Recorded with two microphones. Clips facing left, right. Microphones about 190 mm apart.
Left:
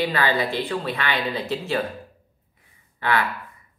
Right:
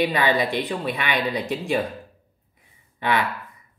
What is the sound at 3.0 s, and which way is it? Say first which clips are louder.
Speech: even; 20° right (ahead or behind).